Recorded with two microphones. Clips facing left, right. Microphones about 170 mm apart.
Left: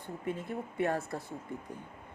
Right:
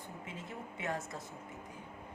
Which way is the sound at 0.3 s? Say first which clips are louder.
Left 12 dB; 60° left (ahead or behind).